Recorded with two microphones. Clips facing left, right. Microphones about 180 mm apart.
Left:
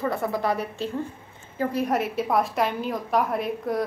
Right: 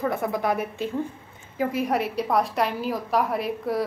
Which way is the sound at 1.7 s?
Centre (ahead or behind).